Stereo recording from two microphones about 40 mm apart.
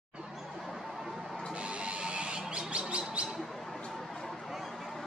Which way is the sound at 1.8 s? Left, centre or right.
Right.